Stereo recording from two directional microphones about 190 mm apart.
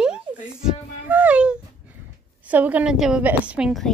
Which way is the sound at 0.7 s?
10° right (ahead or behind).